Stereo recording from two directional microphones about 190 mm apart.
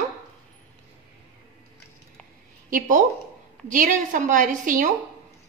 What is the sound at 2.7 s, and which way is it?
A woman's voice, 45° right (ahead or behind).